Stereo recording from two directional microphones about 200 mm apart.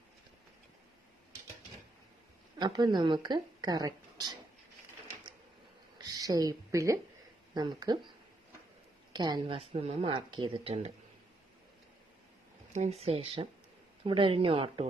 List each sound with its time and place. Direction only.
2.6 s speech: 20° right (ahead or behind)
6.1 s a woman's voice: 20° right (ahead or behind)
9.1 s speech: 20° right (ahead or behind)
12.7 s speech: 35° right (ahead or behind)